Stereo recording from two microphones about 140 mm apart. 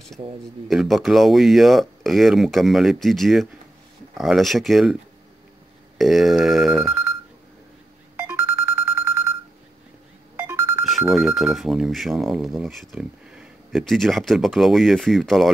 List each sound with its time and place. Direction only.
0.7 s speech: centre (ahead or behind)
5.9 s speech: centre (ahead or behind)
8.2 s music: 15° right (ahead or behind)
10.3 s music: 20° right (ahead or behind)
10.9 s speech: centre (ahead or behind)